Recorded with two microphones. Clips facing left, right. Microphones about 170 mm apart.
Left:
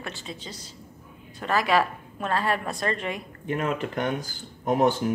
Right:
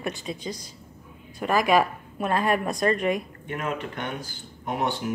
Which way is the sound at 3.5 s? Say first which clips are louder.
Left 3 dB; 40° left (ahead or behind).